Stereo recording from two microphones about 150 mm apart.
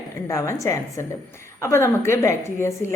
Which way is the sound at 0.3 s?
20° left (ahead or behind).